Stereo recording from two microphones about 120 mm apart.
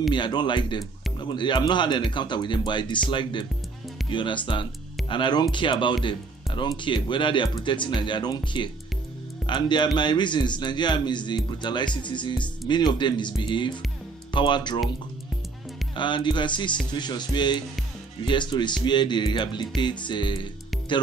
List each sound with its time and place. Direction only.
0.1 s speech: 40° left (ahead or behind)
16.0 s speech: 40° left (ahead or behind)